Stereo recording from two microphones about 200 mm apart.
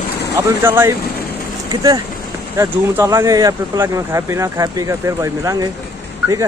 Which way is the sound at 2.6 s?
15° right (ahead or behind).